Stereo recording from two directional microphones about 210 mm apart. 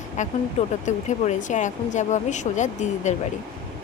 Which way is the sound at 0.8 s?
35° left (ahead or behind).